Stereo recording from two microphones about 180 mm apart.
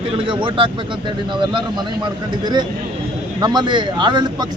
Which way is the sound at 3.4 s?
25° right (ahead or behind).